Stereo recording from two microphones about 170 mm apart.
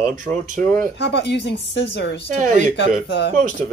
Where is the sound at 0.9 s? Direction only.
90° left.